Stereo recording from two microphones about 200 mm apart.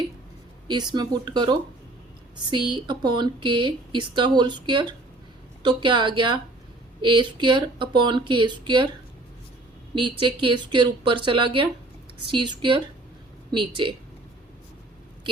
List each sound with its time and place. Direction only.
0.9 s speech: 20° right (ahead or behind)
9.9 s speech: 25° right (ahead or behind)